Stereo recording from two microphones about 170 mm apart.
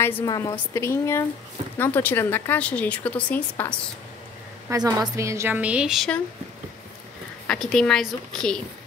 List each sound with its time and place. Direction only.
0.0 s a woman's voice: 15° left (ahead or behind)
4.6 s a woman's voice: 20° right (ahead or behind); by 6.2 s 5° left (ahead or behind)
7.4 s a woman's voice: 5° left (ahead or behind)